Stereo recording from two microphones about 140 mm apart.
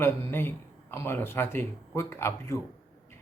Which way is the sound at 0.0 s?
15° left (ahead or behind).